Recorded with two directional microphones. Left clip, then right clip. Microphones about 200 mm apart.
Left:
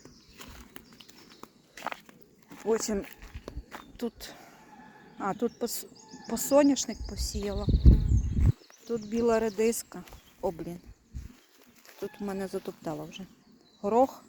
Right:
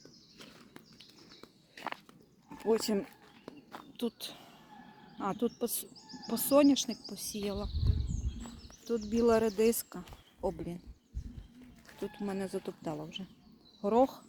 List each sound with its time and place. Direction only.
0.3 s a sound: 45° left (ahead or behind)
1.4 s walk: 55° left (ahead or behind)
2.6 s speech: 5° right (ahead or behind)
3.1 s walk: 40° left (ahead or behind)
3.9 s a sound: 5° right (ahead or behind)
5.1 s speech: centre (ahead or behind)
8.8 s speech: 5° right (ahead or behind)
12.0 s speech: 5° left (ahead or behind)